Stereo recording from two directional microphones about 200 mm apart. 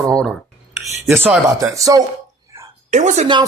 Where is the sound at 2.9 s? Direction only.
35° right (ahead or behind).